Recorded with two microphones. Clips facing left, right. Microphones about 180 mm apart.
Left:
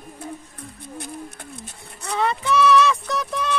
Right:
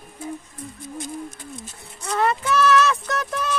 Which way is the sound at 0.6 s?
60° left (ahead or behind).